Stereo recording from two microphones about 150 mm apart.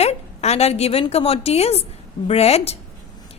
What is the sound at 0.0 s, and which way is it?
A woman's voice, 45° left (ahead or behind).